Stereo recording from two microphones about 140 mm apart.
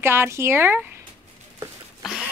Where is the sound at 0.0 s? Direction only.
15° right (ahead or behind).